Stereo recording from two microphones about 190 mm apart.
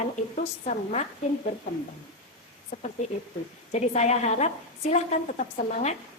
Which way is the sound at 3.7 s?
35° left (ahead or behind).